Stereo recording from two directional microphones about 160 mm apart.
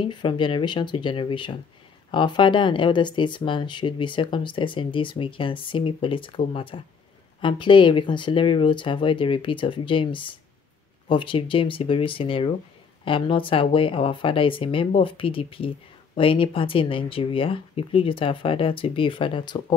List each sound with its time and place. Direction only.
0.0 s speech: 30° left (ahead or behind)